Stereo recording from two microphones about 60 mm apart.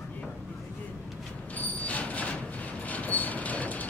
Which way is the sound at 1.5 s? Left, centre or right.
Left.